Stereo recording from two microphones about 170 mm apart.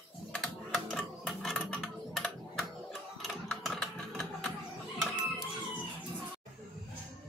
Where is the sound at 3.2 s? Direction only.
Centre (ahead or behind).